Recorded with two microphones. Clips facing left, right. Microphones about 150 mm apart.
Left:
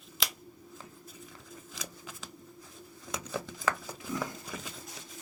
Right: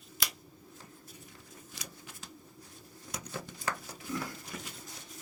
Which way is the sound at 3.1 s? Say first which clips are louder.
Left 4 dB; 90° left.